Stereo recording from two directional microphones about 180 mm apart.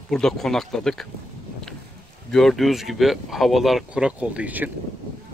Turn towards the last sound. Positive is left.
turn(degrees=-10)  # may be behind; listen again after turning